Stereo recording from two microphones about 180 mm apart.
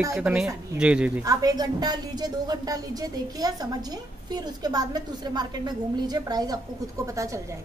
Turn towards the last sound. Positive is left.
turn(degrees=-15)  # may be behind; listen again after turning